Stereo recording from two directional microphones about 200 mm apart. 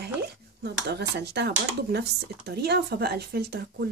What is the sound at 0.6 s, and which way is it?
Speech, 55° right (ahead or behind).